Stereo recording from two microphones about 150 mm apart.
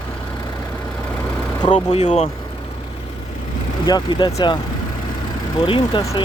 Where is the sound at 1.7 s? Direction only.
45° left (ahead or behind).